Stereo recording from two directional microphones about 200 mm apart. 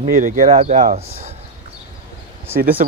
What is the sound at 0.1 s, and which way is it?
Speech, 40° right (ahead or behind).